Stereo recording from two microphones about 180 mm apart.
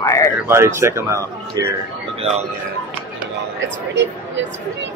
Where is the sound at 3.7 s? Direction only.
85° right.